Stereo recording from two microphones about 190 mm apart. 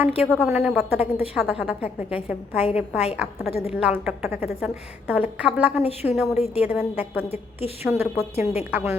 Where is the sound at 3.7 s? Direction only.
5° right (ahead or behind).